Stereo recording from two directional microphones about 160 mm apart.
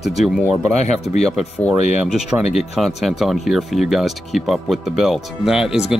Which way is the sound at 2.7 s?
Centre (ahead or behind).